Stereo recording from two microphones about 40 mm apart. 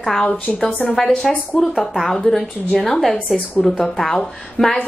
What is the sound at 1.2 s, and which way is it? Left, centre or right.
A woman's voice, centre.